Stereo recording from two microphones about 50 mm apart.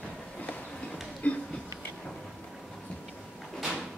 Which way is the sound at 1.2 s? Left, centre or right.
Left.